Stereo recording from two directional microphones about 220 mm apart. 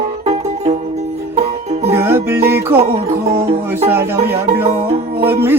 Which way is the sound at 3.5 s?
25° right (ahead or behind).